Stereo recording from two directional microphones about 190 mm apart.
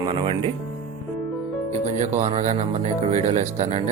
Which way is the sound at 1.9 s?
40° right (ahead or behind).